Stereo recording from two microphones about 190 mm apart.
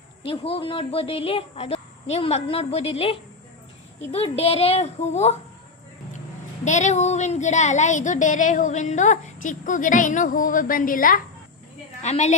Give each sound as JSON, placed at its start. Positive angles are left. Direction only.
{"t": 0.3, "sound": "female singing", "side_deg": 30}
{"t": 6.7, "sound": "female singing", "side_deg": 40}